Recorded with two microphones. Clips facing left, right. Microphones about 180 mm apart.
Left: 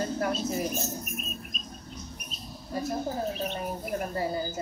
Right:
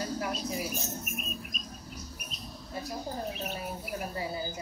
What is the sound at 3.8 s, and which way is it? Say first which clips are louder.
Speech: left 7 dB; 50° left (ahead or behind).